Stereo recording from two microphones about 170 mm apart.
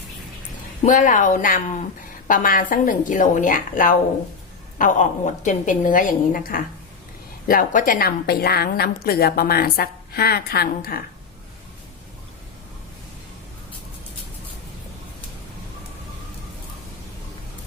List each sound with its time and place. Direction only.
0.8 s a woman's voice: 45° left (ahead or behind); by 11.0 s 60° left (ahead or behind)